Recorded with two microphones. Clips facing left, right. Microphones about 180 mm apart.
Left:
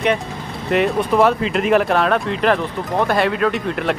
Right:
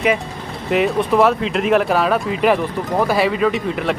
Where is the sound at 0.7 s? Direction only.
Centre (ahead or behind).